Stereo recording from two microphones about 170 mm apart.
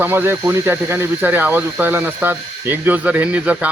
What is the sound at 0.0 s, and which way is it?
A man's voice, 10° right (ahead or behind).